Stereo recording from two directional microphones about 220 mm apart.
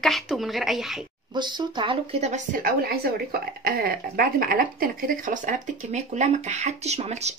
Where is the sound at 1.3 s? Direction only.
20° right (ahead or behind).